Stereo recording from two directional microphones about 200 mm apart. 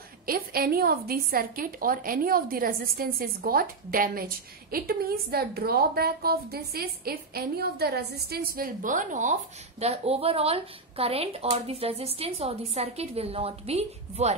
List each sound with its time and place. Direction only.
0.3 s a woman's voice: 50° right (ahead or behind); by 14.3 s 30° right (ahead or behind)